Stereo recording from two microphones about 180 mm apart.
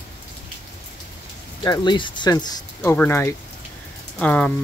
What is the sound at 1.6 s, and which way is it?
Speech, 20° left (ahead or behind).